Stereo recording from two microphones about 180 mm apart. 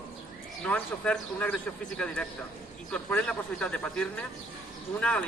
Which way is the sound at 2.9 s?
5° left (ahead or behind).